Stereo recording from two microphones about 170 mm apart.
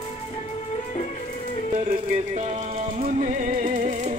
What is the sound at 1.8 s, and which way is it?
Music, 45° right (ahead or behind).